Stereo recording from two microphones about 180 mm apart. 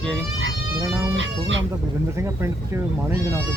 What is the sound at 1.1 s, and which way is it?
Speech, 90° right.